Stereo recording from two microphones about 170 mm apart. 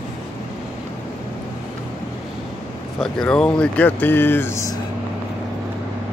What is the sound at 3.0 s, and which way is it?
Speech, 5° left (ahead or behind).